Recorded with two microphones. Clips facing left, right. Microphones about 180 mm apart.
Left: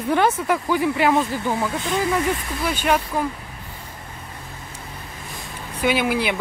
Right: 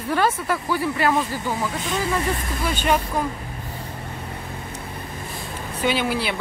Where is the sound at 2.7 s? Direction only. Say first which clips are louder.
Left 1 dB; 10° left (ahead or behind).